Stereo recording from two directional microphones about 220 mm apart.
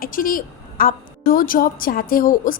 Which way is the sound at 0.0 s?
40° left (ahead or behind).